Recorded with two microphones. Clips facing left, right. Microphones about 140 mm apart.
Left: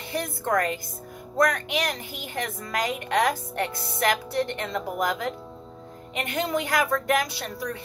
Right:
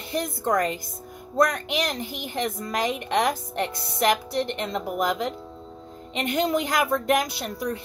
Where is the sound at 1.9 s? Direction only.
25° right (ahead or behind).